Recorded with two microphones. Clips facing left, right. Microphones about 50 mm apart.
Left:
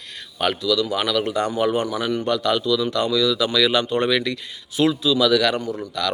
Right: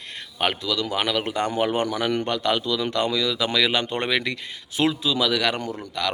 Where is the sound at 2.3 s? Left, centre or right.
Right.